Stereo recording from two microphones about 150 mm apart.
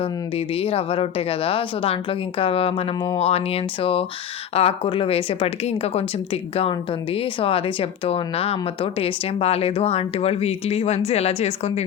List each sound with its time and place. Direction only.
0.0 s a woman's voice: 40° left (ahead or behind)